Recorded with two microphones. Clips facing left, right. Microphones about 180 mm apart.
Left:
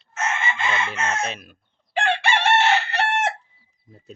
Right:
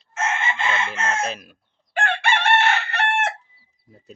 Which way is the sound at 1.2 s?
Centre (ahead or behind).